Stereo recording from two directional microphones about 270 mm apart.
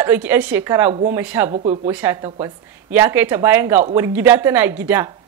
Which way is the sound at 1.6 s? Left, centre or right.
Right.